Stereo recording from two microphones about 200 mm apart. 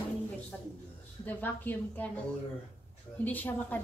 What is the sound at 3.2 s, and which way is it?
Speech, 10° left (ahead or behind).